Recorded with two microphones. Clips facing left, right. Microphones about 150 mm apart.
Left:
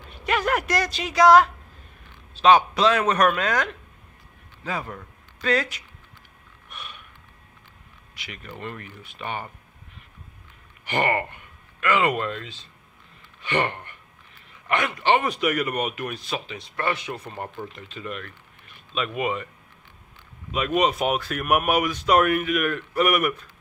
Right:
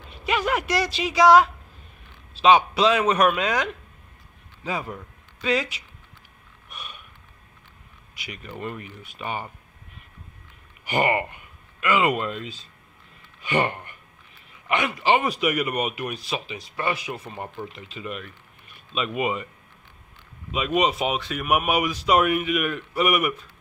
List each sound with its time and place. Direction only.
0.2 s speech: centre (ahead or behind)
6.7 s snort: 15° right (ahead or behind)
8.3 s a man's voice: 15° right (ahead or behind)
10.9 s a man's voice: 15° right (ahead or behind)
14.7 s a man's voice: 5° right (ahead or behind)
20.5 s speech: 5° right (ahead or behind)